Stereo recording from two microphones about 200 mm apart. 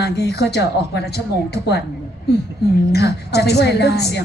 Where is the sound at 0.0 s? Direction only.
55° left (ahead or behind).